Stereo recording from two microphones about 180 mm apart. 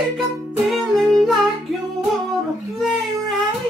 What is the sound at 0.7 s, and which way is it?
Music, centre (ahead or behind).